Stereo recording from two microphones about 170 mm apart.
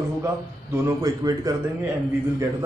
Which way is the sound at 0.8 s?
20° right (ahead or behind).